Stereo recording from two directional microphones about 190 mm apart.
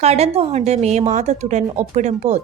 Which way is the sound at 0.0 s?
35° right (ahead or behind).